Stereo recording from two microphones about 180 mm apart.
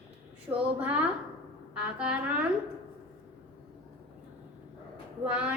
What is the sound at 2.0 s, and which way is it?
Speech, 5° right (ahead or behind).